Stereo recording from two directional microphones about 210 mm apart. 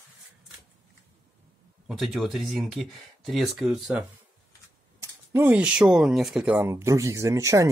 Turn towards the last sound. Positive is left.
turn(degrees=-15)  # may be behind; listen again after turning